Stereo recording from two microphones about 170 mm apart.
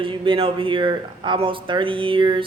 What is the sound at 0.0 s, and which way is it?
Speech, 30° right (ahead or behind).